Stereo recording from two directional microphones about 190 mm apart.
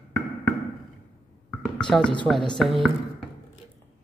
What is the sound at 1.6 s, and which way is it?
Music, 5° left (ahead or behind).